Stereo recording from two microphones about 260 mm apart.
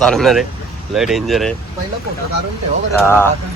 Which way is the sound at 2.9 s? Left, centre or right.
Centre.